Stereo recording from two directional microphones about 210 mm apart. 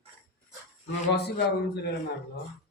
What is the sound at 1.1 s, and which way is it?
Speech, 50° left (ahead or behind).